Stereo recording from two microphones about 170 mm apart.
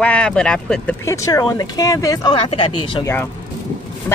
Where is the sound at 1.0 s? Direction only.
20° left (ahead or behind).